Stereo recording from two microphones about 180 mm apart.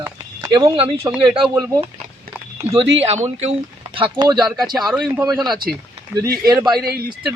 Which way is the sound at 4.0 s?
25° right (ahead or behind).